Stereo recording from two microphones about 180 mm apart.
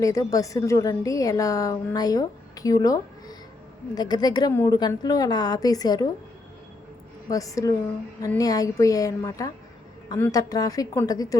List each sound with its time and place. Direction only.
0.0 s a woman's voice: 20° left (ahead or behind)
7.3 s a woman's voice: 20° left (ahead or behind)